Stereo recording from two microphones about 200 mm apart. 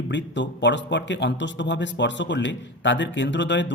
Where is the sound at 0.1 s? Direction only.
60° left (ahead or behind).